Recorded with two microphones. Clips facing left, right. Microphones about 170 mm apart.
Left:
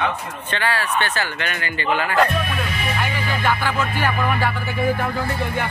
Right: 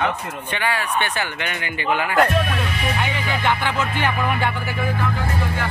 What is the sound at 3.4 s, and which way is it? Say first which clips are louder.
Music: even; 20° right (ahead or behind).